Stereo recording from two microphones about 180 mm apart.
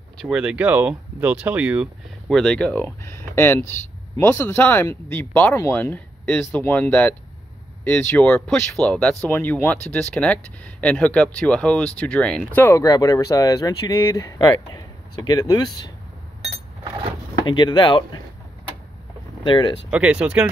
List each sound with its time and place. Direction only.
0.2 s speech: 5° right (ahead or behind); by 15.9 s 20° left (ahead or behind)
17.5 s speech: 25° left (ahead or behind)
19.4 s speech: 25° left (ahead or behind)
19.9 s speech: 5° right (ahead or behind)